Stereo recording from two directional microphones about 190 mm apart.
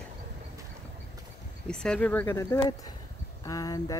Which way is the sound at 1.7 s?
5° left (ahead or behind).